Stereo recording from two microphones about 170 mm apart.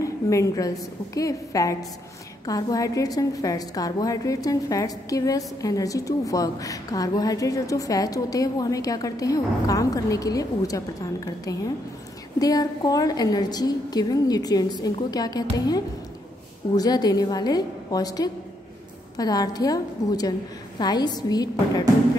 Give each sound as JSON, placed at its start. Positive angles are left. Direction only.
{"t": 0.0, "sound": "a woman's voice", "side_deg": 20}